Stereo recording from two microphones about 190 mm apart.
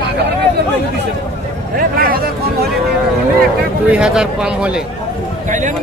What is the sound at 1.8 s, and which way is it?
Speech, 50° right (ahead or behind).